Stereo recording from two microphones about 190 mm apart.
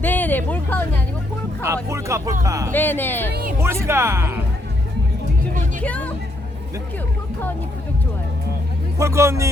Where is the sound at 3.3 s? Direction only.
55° right (ahead or behind).